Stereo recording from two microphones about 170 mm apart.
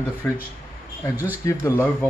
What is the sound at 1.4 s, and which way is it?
Speech, 15° left (ahead or behind).